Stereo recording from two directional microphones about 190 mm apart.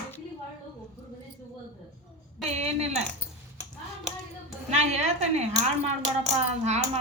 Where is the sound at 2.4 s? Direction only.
35° right (ahead or behind).